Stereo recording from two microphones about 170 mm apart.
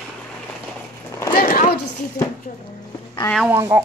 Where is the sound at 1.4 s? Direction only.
55° left (ahead or behind).